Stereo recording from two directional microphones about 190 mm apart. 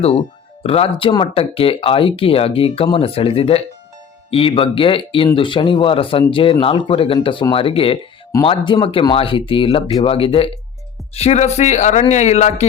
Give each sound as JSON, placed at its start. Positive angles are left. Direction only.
{"t": 0.6, "sound": "speech", "side_deg": 30}